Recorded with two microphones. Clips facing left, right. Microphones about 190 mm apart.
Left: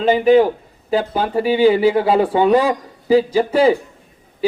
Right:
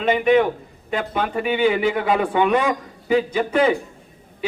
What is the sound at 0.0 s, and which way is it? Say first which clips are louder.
A man's voice: left 4 dB; 30° left (ahead or behind).